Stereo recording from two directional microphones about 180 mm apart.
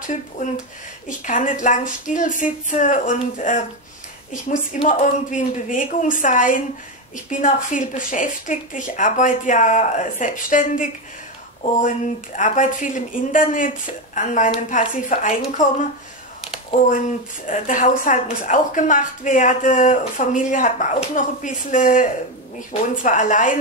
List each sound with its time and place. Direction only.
1.0 s a woman's voice: 45° left (ahead or behind)
4.8 s a woman's voice: 45° left (ahead or behind)
17.5 s a woman's voice: 45° left (ahead or behind)